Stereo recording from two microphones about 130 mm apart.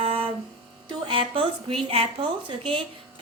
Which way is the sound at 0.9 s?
40° right (ahead or behind).